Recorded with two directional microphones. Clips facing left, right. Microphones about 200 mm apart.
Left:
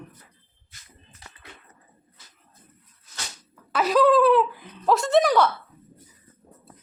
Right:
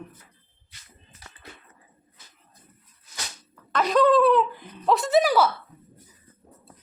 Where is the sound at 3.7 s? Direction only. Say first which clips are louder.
Left 1 dB; 5° left (ahead or behind).